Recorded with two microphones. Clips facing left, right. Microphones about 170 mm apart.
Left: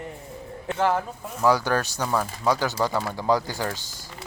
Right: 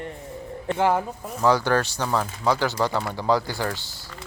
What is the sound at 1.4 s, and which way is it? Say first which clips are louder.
Speech: right 1 dB; 10° left (ahead or behind).